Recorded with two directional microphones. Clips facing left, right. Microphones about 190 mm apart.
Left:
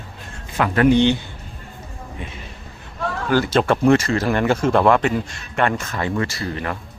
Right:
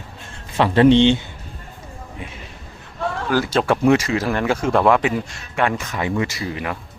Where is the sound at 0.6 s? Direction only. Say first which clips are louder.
Right 3 dB; 25° right (ahead or behind).